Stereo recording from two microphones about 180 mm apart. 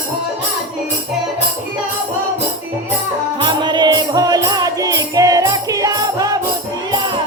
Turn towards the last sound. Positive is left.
turn(degrees=-20)  # may be behind; listen again after turning